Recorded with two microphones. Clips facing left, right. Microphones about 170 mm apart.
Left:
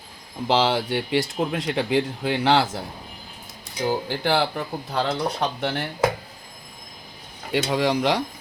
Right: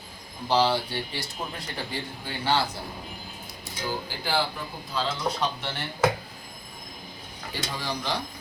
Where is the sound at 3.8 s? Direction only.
60° left (ahead or behind).